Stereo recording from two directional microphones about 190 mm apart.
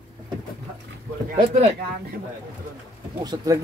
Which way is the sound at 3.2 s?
20° right (ahead or behind).